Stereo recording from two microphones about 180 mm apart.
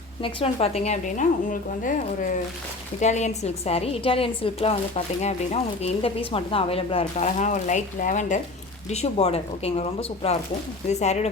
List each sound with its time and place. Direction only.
0.2 s a woman's voice: 30° left (ahead or behind)
3.0 s a woman's voice: 40° left (ahead or behind)